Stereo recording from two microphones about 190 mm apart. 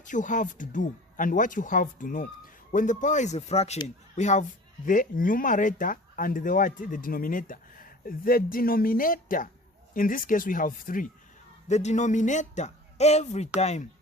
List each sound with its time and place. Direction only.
0.0 s a man's voice: 40° left (ahead or behind)